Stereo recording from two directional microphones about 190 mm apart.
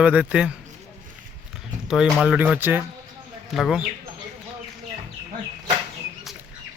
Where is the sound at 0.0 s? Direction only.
5° right (ahead or behind).